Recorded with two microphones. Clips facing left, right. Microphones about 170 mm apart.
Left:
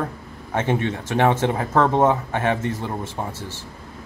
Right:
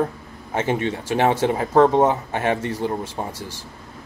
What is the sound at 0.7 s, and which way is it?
Speech, 10° right (ahead or behind).